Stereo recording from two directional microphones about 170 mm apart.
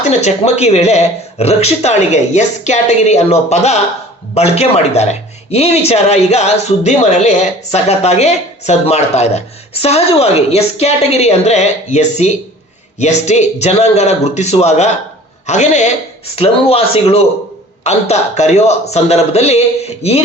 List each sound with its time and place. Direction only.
0.0 s speech: 40° left (ahead or behind)